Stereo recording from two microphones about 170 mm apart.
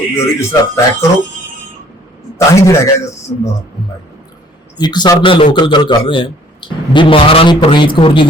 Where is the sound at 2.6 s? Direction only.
20° left (ahead or behind).